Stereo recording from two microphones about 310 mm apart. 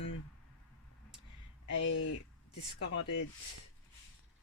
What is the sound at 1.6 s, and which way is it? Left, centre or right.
Speech, left.